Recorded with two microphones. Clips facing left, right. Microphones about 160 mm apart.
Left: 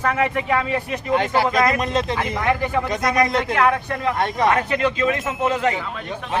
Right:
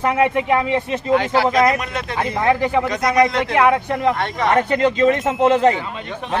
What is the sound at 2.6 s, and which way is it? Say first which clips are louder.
Speech: right 3 dB; 20° right (ahead or behind).